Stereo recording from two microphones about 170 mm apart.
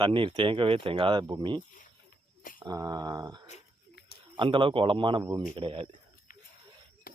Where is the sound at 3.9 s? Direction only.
70° left (ahead or behind).